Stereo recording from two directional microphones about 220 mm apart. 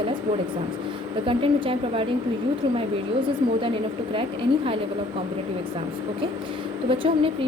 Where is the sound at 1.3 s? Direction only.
25° right (ahead or behind).